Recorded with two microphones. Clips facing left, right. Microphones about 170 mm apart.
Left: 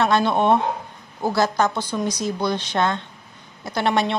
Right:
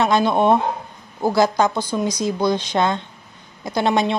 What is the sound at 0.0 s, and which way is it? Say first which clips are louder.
A woman's voice: right 2 dB; 15° right (ahead or behind).